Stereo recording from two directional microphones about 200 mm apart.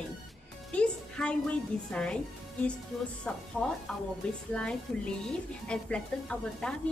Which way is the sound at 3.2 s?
5° left (ahead or behind).